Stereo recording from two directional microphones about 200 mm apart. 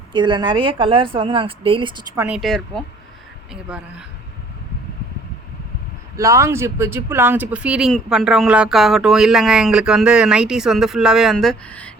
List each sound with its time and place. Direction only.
0.1 s a woman's voice: 20° right (ahead or behind)
2.2 s speech: 5° right (ahead or behind)
6.1 s speech: 15° right (ahead or behind); by 11.9 s 5° left (ahead or behind)